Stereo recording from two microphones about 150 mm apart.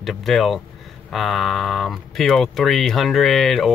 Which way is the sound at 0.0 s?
Centre (ahead or behind).